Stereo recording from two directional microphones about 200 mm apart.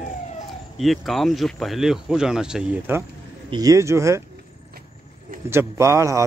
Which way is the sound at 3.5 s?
15° right (ahead or behind).